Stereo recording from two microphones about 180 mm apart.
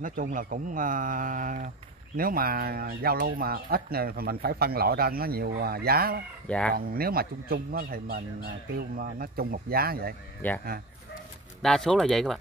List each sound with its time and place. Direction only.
0.0 s speech: 50° right (ahead or behind)
6.4 s speech: 5° left (ahead or behind)
6.7 s speech: 55° right (ahead or behind)
10.4 s speech: 10° left (ahead or behind)
11.6 s speech: 5° left (ahead or behind)